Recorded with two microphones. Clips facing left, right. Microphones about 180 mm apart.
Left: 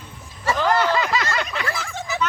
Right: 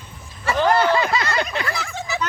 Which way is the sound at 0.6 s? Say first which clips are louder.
Right 3 dB; 25° right (ahead or behind).